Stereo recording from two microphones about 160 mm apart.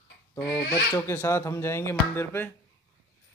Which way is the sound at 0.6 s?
70° left (ahead or behind).